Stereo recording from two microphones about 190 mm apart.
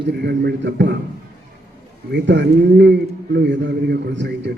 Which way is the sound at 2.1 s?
65° right (ahead or behind).